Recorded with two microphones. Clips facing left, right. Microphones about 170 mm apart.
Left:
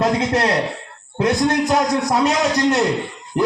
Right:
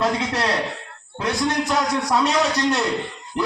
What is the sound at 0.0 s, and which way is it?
A man's voice, 45° left (ahead or behind).